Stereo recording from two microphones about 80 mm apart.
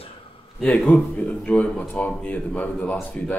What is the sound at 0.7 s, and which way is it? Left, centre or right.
Speech, centre.